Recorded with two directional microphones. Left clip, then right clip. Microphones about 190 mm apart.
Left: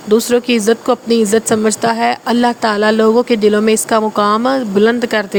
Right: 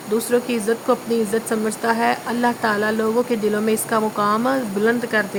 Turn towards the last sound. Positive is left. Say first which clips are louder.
# left 5 dB
turn(degrees=45)  # may be behind; listen again after turning